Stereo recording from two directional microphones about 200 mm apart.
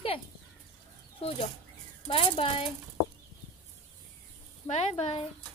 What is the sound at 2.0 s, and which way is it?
Speech, 25° left (ahead or behind).